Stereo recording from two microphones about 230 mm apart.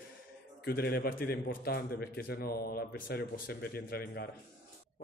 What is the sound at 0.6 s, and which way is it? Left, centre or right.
A man's voice, left.